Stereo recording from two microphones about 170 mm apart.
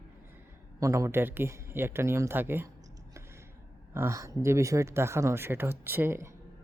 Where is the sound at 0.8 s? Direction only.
20° right (ahead or behind).